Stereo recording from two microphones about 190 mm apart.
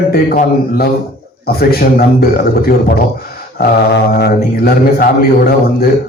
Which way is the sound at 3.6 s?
60° left (ahead or behind).